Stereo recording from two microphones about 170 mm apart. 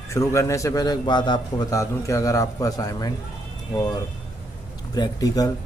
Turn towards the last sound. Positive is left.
turn(degrees=20)  # may be behind; listen again after turning